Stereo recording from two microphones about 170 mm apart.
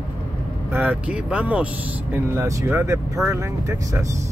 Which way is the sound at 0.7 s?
10° right (ahead or behind).